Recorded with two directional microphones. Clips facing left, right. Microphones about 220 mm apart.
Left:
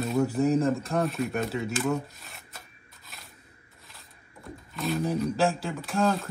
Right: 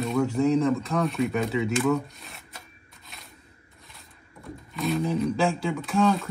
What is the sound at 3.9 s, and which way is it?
Speech, centre (ahead or behind).